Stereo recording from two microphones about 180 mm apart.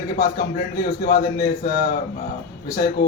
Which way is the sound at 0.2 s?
55° left (ahead or behind).